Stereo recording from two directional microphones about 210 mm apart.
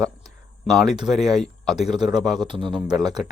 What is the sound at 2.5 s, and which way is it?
Speech, 25° right (ahead or behind).